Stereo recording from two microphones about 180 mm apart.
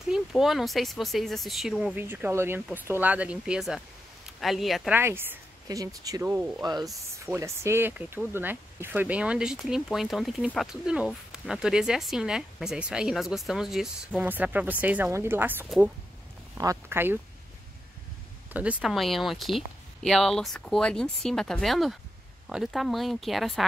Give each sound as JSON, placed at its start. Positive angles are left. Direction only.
{"t": 0.1, "sound": "speech", "side_deg": 0}
{"t": 6.6, "sound": "speech", "side_deg": -20}
{"t": 18.5, "sound": "speech", "side_deg": -5}